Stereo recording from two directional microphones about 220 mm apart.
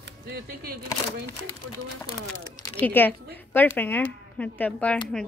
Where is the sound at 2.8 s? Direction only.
10° left (ahead or behind).